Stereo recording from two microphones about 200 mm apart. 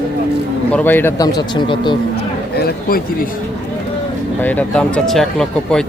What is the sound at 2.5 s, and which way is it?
Speech, 50° left (ahead or behind).